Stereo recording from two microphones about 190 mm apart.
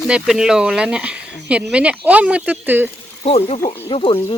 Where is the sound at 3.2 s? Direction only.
30° left (ahead or behind).